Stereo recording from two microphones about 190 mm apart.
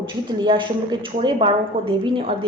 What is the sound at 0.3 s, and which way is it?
A woman's voice, 25° right (ahead or behind).